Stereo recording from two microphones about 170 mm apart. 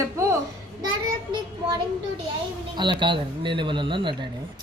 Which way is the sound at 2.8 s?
25° right (ahead or behind).